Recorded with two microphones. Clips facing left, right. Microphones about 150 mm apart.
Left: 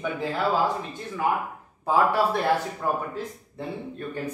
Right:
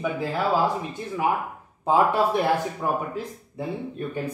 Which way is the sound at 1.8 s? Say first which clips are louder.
Right 1 dB; 20° right (ahead or behind).